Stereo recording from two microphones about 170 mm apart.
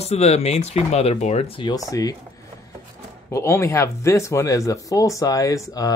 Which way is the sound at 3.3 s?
15° left (ahead or behind).